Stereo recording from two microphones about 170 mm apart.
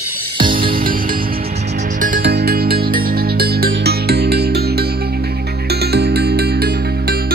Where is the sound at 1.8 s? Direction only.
50° right (ahead or behind).